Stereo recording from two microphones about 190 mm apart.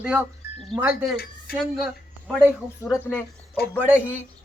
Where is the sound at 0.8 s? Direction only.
5° right (ahead or behind).